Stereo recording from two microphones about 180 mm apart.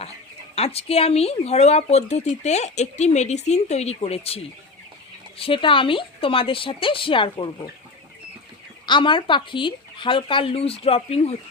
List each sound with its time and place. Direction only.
0.5 s speech: 35° left (ahead or behind)
8.9 s speech: 25° left (ahead or behind)